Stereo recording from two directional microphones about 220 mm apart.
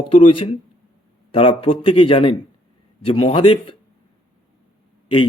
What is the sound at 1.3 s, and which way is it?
Speech, 25° left (ahead or behind).